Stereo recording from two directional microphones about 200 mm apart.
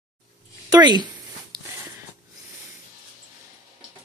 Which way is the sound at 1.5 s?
20° right (ahead or behind).